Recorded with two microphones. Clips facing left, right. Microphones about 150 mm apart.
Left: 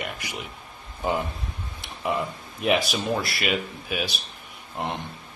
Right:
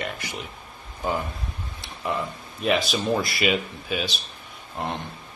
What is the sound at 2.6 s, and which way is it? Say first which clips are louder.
Speech: even; 15° left (ahead or behind).